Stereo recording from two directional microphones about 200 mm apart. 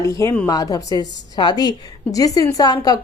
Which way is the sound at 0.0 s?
15° left (ahead or behind).